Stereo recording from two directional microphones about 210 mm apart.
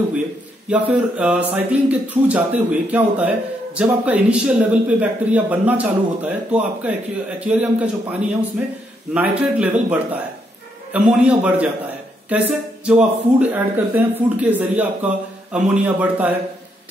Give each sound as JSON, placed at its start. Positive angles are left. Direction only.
{"t": 0.7, "sound": "a man's voice", "side_deg": -5}